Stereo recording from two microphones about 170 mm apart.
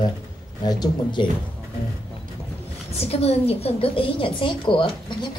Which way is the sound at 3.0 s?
35° left (ahead or behind).